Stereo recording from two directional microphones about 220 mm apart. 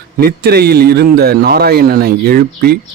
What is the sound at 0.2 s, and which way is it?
Speech, 45° right (ahead or behind).